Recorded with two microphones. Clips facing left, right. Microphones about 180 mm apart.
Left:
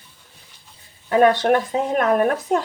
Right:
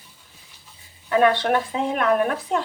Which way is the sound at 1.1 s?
40° left (ahead or behind).